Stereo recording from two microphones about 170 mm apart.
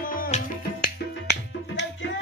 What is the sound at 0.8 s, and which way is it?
Music, 85° left.